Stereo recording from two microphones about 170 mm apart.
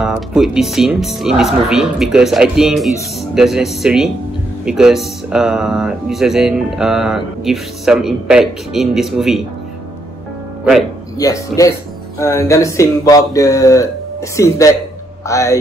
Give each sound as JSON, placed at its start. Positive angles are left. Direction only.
{"t": 0.0, "sound": "speech", "side_deg": -5}
{"t": 11.1, "sound": "speech", "side_deg": 20}